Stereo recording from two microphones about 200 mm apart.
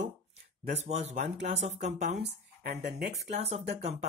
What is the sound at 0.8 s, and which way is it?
Speech, 35° right (ahead or behind).